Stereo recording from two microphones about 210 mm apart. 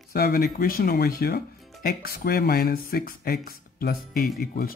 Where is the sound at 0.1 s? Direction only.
45° left (ahead or behind).